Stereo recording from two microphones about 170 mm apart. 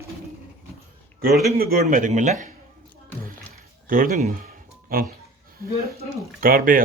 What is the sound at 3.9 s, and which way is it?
Music, 55° right (ahead or behind).